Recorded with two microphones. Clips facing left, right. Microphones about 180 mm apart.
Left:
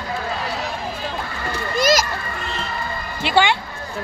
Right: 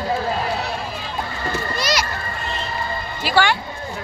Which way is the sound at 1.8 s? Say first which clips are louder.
Left 7 dB; 45° left (ahead or behind).